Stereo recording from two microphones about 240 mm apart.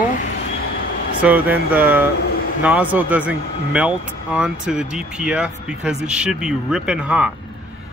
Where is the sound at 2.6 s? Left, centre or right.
Centre.